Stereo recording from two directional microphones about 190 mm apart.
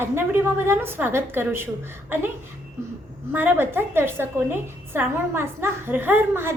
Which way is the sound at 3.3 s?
10° right (ahead or behind).